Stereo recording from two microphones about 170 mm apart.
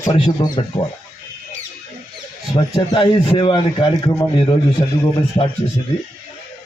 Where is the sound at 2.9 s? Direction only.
30° left (ahead or behind).